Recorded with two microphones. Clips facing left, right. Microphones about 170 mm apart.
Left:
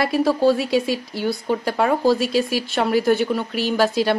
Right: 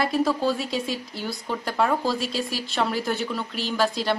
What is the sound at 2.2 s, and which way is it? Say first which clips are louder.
Speech: left 8 dB; 65° left (ahead or behind).